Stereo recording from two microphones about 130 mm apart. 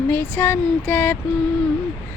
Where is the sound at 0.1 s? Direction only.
15° left (ahead or behind).